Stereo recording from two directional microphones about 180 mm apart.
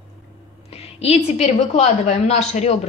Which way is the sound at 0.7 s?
35° left (ahead or behind).